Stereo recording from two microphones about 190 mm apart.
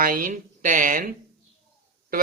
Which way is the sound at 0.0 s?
45° right (ahead or behind).